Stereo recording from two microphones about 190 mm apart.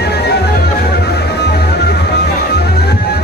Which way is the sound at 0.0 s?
60° left (ahead or behind).